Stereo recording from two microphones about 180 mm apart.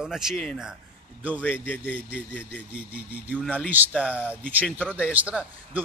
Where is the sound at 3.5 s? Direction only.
10° right (ahead or behind).